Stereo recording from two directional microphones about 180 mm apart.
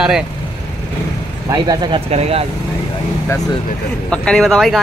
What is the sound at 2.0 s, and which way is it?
Speech, 35° right (ahead or behind).